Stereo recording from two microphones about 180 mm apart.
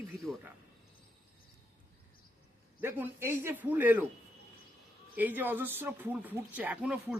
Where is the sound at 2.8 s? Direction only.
10° right (ahead or behind).